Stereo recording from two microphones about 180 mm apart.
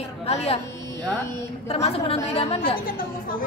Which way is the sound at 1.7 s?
35° left (ahead or behind).